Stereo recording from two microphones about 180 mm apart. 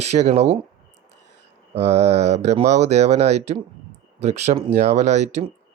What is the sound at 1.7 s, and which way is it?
Speech, 35° right (ahead or behind).